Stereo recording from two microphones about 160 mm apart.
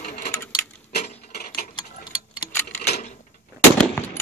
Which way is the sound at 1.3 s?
70° left (ahead or behind).